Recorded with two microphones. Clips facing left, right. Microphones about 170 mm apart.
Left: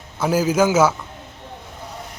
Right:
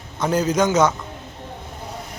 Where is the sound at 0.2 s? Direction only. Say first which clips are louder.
Left 2 dB; 5° left (ahead or behind).